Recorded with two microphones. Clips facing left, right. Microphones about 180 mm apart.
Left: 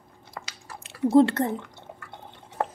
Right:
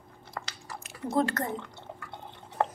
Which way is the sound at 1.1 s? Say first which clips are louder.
Left 9 dB; 30° left (ahead or behind).